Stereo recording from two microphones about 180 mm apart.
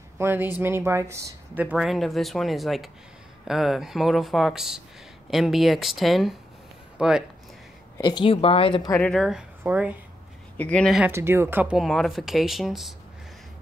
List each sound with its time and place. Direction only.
0.2 s speech: 10° right (ahead or behind)
8.0 s speech: 25° left (ahead or behind)
8.9 s speech: 5° left (ahead or behind)
9.6 s speech: 10° right (ahead or behind)
10.6 s speech: 5° left (ahead or behind)
11.0 s speech: 15° right (ahead or behind)